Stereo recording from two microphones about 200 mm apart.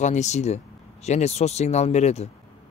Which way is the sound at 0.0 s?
35° left (ahead or behind).